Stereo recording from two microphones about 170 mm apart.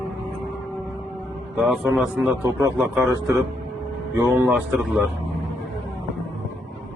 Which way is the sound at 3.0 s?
20° right (ahead or behind).